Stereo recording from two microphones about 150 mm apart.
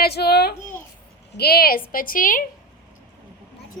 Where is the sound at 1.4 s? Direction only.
90° left; by 2.4 s 65° left (ahead or behind).